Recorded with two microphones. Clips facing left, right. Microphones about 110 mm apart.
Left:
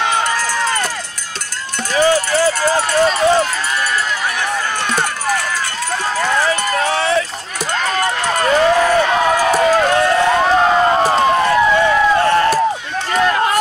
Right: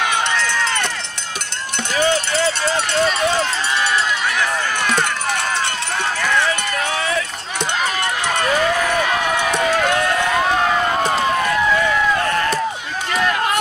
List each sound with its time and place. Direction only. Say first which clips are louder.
0.5 s run: left 3 dB; 30° left (ahead or behind)
2.0 s run: left 4 dB; 25° right (ahead or behind)
3.0 s speech: left 5 dB; 30° left (ahead or behind)
6.1 s run: left 3 dB; 30° left (ahead or behind)
13.1 s a sound: left 4 dB; 35° left (ahead or behind)